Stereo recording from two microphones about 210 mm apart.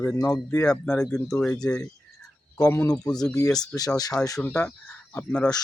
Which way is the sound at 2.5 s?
15° left (ahead or behind).